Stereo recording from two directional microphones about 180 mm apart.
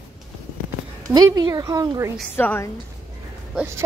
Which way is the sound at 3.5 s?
15° right (ahead or behind).